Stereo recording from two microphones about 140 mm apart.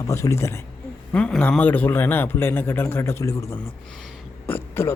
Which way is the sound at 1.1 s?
10° left (ahead or behind).